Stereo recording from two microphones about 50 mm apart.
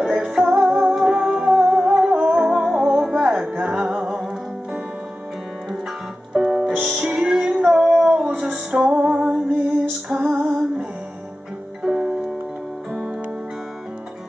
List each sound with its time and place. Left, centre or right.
0.0 s music: centre
6.3 s music: centre
10.0 s female singing: centre
11.8 s music: centre